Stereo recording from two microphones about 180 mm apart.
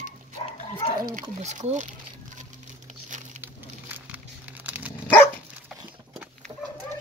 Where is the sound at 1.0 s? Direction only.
45° right (ahead or behind).